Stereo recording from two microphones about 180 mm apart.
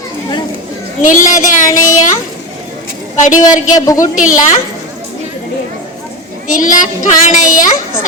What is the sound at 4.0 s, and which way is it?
Child singing, 45° left (ahead or behind).